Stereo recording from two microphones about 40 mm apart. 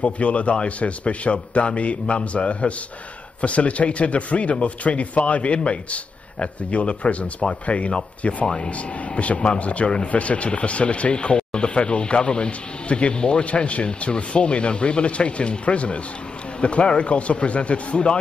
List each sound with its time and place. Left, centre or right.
0.0 s a man's voice: left